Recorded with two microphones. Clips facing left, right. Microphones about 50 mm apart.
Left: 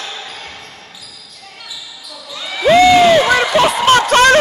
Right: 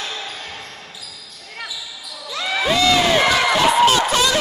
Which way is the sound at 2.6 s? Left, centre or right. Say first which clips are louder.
Left 9 dB; left.